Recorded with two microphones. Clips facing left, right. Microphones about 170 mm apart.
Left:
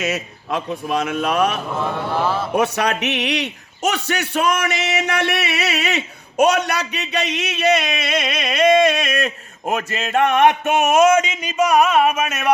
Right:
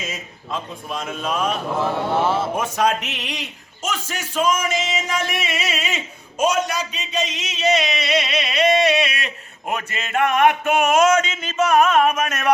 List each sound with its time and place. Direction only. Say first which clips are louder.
0.0 s a man's voice: left 8 dB; 70° left (ahead or behind)
2.0 s speech: even; 25° right (ahead or behind)
2.6 s a man's voice: left 2 dB; 70° left (ahead or behind); by 10.7 s 25° left (ahead or behind)
11.2 s speech: left 2 dB; 15° left (ahead or behind)